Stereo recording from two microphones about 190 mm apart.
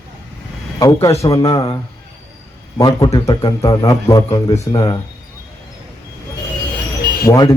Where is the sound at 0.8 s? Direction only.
20° left (ahead or behind).